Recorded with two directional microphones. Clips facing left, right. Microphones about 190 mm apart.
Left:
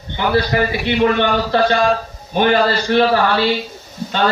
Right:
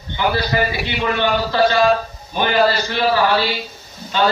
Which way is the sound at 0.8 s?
60° left (ahead or behind).